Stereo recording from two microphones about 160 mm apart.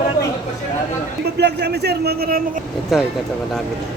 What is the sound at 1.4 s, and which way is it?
A man's voice, 90° right.